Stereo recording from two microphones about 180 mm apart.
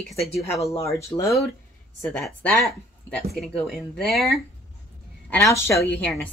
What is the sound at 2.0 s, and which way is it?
A woman's voice, 5° left (ahead or behind).